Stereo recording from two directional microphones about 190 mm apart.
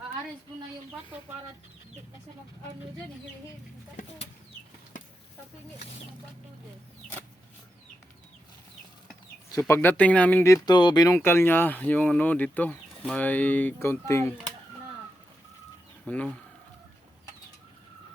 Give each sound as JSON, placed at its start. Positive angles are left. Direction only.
{"t": 9.5, "sound": "speech", "side_deg": 15}
{"t": 16.0, "sound": "speech", "side_deg": 5}